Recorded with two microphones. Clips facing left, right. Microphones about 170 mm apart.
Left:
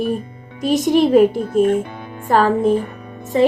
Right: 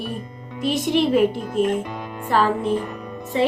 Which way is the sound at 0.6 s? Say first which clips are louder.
Left 5 dB; 45° left (ahead or behind).